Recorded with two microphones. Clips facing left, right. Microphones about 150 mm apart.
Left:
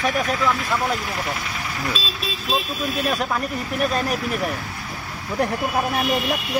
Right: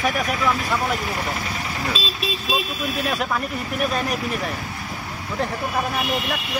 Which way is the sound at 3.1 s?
Centre (ahead or behind).